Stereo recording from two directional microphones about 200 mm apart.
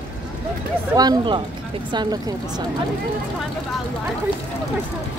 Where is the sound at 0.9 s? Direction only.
20° right (ahead or behind).